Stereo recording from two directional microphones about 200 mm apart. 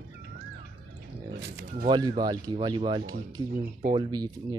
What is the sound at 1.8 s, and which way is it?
Speech, 20° right (ahead or behind).